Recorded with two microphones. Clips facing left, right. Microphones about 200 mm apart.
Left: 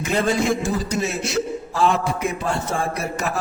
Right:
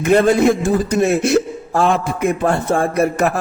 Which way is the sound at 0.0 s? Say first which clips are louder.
Right 8 dB; 55° right (ahead or behind).